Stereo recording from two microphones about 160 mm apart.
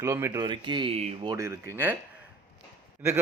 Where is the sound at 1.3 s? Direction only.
20° right (ahead or behind).